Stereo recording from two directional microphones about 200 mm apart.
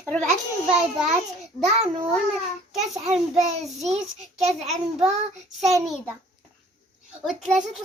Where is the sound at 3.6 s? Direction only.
Centre (ahead or behind).